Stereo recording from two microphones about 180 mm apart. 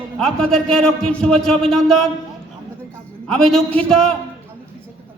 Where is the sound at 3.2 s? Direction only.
5° left (ahead or behind).